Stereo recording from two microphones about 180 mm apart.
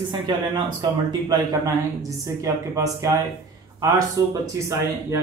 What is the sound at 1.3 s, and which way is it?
A man's voice, 20° right (ahead or behind).